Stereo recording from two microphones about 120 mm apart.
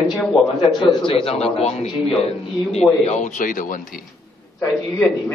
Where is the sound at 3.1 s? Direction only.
75° left (ahead or behind).